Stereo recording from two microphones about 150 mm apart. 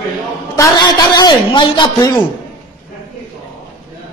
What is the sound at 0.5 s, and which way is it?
A man's voice, 25° left (ahead or behind).